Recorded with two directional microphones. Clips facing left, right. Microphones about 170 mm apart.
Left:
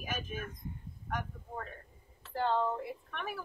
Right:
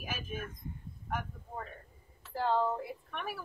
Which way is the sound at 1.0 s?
5° right (ahead or behind).